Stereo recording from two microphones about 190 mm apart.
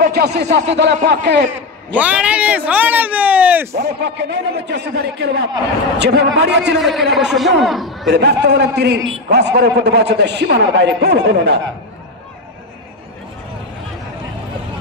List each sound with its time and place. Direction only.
0.0 s a man's voice: 60° right (ahead or behind)
2.0 s speech: 5° right (ahead or behind)
3.7 s a man's voice: 60° right (ahead or behind)
6.8 s speech: centre (ahead or behind)
8.1 s a man's voice: 65° right (ahead or behind)